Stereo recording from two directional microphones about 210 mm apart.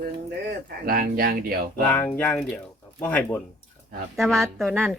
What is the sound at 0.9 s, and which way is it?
Speech, 45° right (ahead or behind).